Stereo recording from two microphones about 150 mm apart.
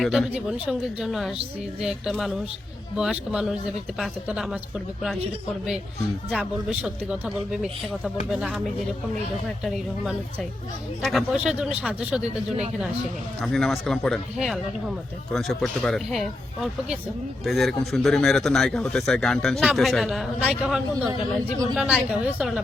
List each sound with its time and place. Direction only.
0.0 s speech: centre (ahead or behind)
6.7 s speech: 5° right (ahead or behind)
13.4 s speech: centre (ahead or behind)